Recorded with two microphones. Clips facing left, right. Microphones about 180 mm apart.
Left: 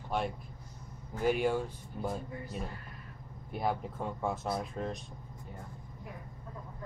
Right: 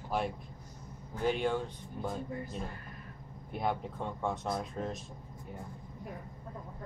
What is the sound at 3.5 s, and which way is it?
Speech, centre (ahead or behind).